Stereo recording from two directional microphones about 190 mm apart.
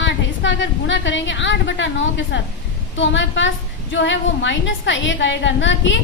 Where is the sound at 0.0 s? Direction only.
75° left (ahead or behind).